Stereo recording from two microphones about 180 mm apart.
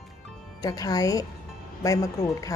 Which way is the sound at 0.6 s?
20° left (ahead or behind).